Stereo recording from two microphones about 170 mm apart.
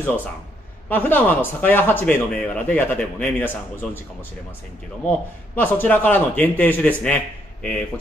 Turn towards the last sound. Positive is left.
turn(degrees=10)  # may be behind; listen again after turning